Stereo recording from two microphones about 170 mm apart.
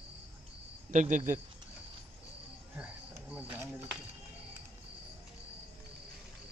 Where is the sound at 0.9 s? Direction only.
50° right (ahead or behind).